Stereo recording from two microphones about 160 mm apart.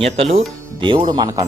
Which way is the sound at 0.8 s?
30° right (ahead or behind).